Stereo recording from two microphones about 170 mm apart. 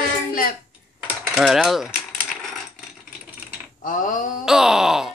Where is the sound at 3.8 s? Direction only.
50° left (ahead or behind).